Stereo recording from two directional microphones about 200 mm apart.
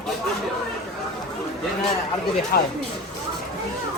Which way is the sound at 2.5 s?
50° left (ahead or behind).